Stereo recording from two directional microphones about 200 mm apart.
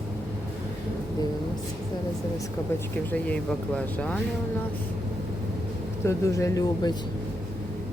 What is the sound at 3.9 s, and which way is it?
Speech, 5° left (ahead or behind).